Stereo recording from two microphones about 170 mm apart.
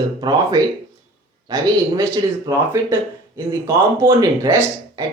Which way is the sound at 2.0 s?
15° right (ahead or behind).